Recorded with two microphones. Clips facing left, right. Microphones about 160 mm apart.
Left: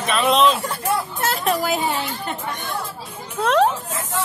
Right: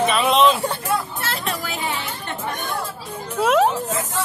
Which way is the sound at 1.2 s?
40° left (ahead or behind).